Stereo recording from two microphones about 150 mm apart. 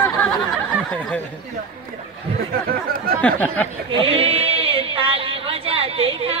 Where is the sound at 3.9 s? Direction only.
40° right (ahead or behind).